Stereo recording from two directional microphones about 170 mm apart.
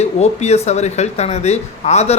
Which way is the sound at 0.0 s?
40° left (ahead or behind).